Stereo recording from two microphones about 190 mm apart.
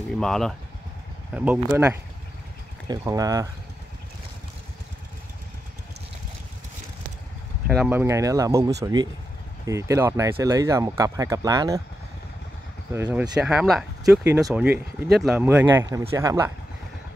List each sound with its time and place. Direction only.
0.2 s speech: centre (ahead or behind); by 3.4 s 15° right (ahead or behind)
7.6 s speech: 5° right (ahead or behind); by 11.8 s 20° right (ahead or behind)
12.9 s speech: 5° right (ahead or behind)